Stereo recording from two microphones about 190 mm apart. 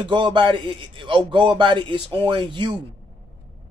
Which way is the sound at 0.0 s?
25° right (ahead or behind).